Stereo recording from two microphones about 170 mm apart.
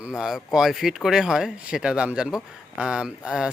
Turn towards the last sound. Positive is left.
turn(degrees=-5)  # may be behind; listen again after turning